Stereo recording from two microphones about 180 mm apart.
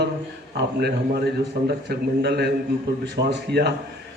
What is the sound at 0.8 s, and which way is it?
A man's voice, 65° right (ahead or behind).